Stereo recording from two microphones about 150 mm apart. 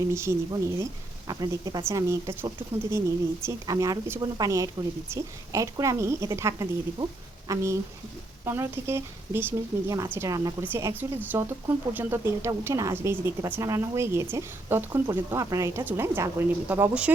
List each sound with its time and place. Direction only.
0.1 s a woman's voice: 20° right (ahead or behind)